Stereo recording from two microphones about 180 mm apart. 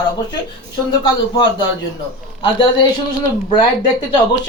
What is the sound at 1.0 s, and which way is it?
Speech, 25° left (ahead or behind).